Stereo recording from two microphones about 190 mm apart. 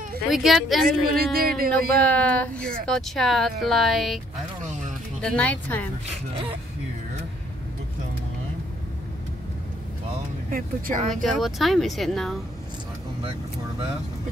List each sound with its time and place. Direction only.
0.3 s speech: centre (ahead or behind)
0.8 s speech: 50° right (ahead or behind)
2.0 s speech: 5° left (ahead or behind)
5.2 s speech: 5° left (ahead or behind)
10.5 s speech: 45° right (ahead or behind)
11.3 s speech: centre (ahead or behind)